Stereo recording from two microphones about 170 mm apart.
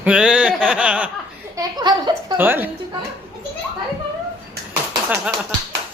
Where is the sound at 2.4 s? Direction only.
10° right (ahead or behind).